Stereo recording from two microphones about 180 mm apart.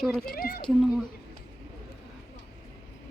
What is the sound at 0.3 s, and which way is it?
Speech, 55° left (ahead or behind).